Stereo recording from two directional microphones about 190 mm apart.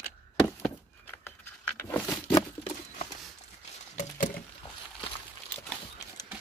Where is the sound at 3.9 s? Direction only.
45° left (ahead or behind).